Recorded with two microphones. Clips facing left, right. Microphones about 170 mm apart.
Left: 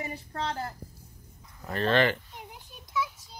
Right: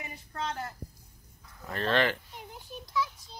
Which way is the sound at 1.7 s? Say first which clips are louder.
Left 3 dB; centre (ahead or behind).